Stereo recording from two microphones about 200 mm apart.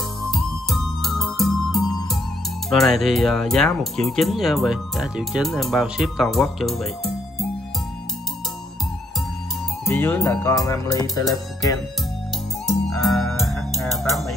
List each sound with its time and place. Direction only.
0.2 s music: centre (ahead or behind)
2.7 s speech: centre (ahead or behind)
9.8 s music: 10° left (ahead or behind)
12.6 s music: centre (ahead or behind)